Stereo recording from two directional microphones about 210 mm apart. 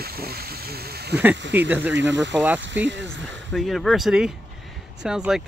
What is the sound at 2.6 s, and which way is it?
Speech, 60° right (ahead or behind).